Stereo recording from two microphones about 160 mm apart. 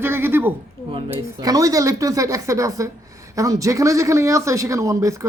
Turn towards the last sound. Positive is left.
turn(degrees=-20)  # may be behind; listen again after turning